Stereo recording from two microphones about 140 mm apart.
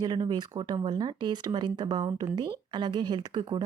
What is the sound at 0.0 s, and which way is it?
A woman's voice, 30° right (ahead or behind).